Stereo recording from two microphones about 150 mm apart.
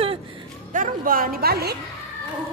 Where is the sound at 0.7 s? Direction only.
65° right (ahead or behind); by 1.7 s 90° right.